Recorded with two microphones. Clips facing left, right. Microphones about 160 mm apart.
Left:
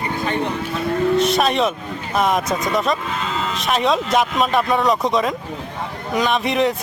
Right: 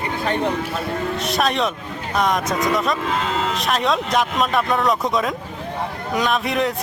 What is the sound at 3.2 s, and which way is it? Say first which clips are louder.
Speech: right 2 dB; 65° right (ahead or behind).